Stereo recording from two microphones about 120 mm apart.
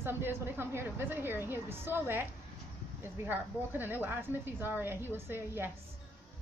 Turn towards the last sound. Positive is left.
turn(degrees=-20)  # may be behind; listen again after turning